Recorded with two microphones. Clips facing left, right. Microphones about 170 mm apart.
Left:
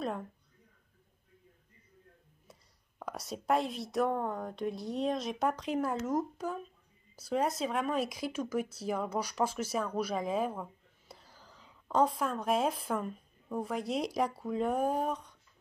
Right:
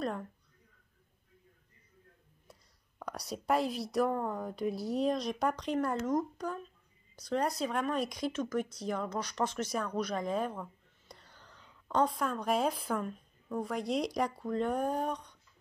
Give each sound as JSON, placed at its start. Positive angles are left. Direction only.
{"t": 3.0, "sound": "speech", "side_deg": 0}